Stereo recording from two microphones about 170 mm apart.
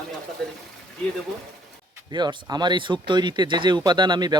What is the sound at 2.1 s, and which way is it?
Speech, 25° right (ahead or behind).